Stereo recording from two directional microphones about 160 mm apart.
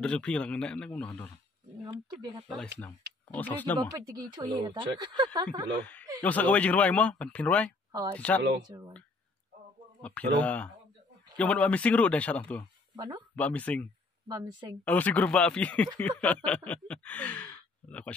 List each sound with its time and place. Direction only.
0.0 s speech: 5° left (ahead or behind)
3.3 s speech: 10° left (ahead or behind)
4.4 s speech: 25° right (ahead or behind)
6.2 s speech: 10° left (ahead or behind)
8.6 s speech: 25° right (ahead or behind)
10.4 s speech: 10° left (ahead or behind)
12.9 s speech: 25° right (ahead or behind)
13.4 s speech: 10° left (ahead or behind)
14.2 s speech: 25° right (ahead or behind)
14.9 s speech: 10° left (ahead or behind)